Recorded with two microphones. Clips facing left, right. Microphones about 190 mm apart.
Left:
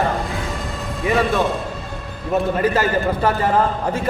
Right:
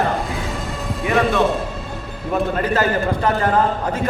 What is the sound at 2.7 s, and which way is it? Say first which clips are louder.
Speech: even; 10° left (ahead or behind).